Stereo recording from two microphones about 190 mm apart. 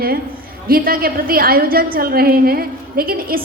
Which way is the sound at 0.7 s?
50° right (ahead or behind).